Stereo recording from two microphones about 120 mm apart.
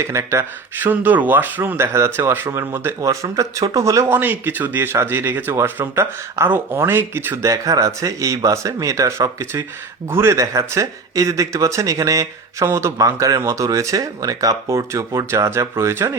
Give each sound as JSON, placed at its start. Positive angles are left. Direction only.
{"t": 0.0, "sound": "speech", "side_deg": -25}